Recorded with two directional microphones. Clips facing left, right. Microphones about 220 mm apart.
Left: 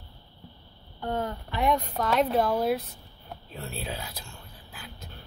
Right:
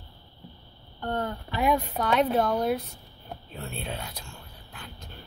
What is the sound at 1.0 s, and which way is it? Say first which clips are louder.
Speech: even; 5° left (ahead or behind).